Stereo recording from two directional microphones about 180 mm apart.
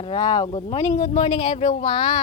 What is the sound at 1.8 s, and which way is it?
Speech, 25° left (ahead or behind).